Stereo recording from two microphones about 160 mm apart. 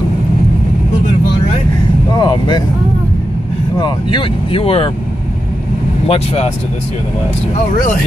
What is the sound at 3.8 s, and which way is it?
Speech, 30° left (ahead or behind).